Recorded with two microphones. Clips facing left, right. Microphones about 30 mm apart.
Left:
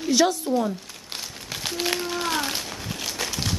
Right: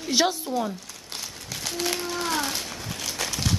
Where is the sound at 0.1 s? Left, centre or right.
Centre.